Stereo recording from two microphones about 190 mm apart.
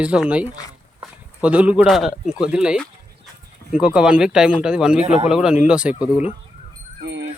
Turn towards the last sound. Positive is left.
turn(degrees=-70)  # may be behind; listen again after turning